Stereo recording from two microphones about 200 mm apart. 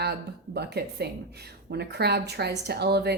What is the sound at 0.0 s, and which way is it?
A woman's voice, 55° right (ahead or behind).